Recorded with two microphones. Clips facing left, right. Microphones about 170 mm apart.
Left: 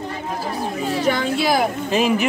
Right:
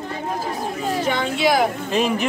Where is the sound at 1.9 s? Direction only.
5° left (ahead or behind).